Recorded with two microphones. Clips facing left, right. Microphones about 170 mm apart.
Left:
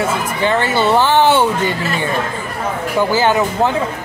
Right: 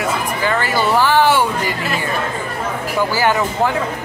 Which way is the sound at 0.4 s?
25° left (ahead or behind).